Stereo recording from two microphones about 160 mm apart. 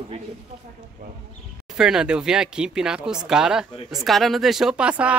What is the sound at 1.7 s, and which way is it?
Speech, 5° right (ahead or behind).